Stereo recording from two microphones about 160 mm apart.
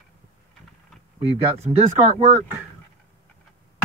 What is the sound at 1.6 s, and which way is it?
Speech, 40° right (ahead or behind).